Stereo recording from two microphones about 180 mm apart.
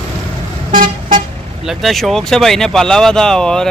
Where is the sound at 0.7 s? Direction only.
45° right (ahead or behind).